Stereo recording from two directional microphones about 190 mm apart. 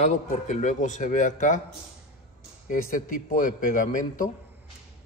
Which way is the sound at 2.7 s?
45° left (ahead or behind).